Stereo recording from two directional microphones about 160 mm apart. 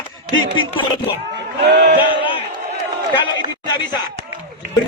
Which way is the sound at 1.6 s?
90° right.